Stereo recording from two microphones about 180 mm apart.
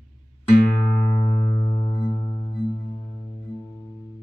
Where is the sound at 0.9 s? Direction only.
20° left (ahead or behind).